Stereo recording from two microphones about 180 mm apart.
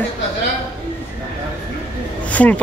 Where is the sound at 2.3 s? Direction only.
10° left (ahead or behind).